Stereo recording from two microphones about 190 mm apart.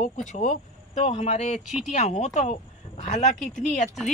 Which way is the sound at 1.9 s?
35° left (ahead or behind).